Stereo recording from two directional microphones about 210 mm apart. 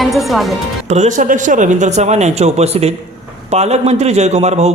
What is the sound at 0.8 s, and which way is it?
A man's voice, 35° right (ahead or behind).